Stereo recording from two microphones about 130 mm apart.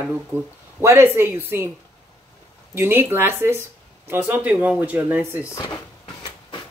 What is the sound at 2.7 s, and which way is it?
Speech, 15° right (ahead or behind).